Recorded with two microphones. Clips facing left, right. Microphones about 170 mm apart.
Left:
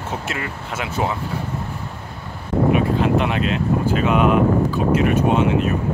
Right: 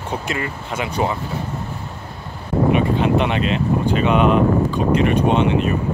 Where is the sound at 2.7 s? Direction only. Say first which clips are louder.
Right 1 dB; centre (ahead or behind).